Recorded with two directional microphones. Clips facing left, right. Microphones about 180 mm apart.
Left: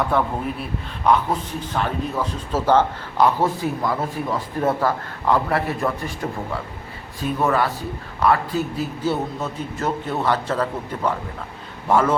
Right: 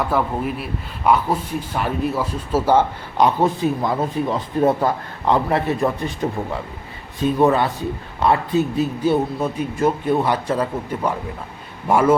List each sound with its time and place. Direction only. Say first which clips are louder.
0.1 s a man's voice: right 1 dB; 5° right (ahead or behind)